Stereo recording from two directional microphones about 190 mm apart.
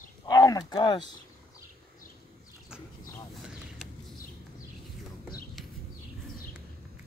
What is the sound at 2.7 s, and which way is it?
Dog, 5° right (ahead or behind).